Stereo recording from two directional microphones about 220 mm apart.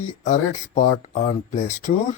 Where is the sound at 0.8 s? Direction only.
35° left (ahead or behind).